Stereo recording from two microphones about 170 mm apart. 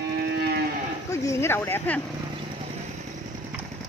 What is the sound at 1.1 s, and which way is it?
Speech, 15° left (ahead or behind).